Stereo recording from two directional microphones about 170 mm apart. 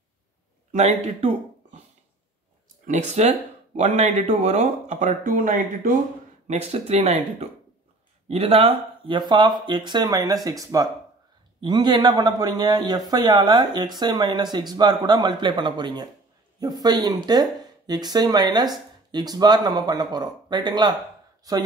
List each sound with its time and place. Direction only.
0.7 s speech: 40° right (ahead or behind)
2.9 s speech: 40° right (ahead or behind)
6.4 s a man's voice: 40° right (ahead or behind)